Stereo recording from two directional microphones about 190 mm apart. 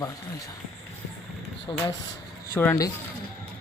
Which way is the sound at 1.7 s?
15° left (ahead or behind).